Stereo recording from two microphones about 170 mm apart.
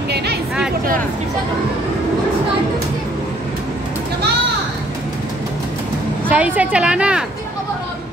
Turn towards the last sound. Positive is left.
turn(degrees=-5)  # may be behind; listen again after turning